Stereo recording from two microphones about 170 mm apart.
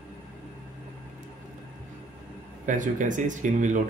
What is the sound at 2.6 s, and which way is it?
Speech, 50° right (ahead or behind).